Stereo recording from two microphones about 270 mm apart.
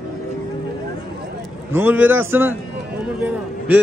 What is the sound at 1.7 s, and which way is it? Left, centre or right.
A man's voice, centre.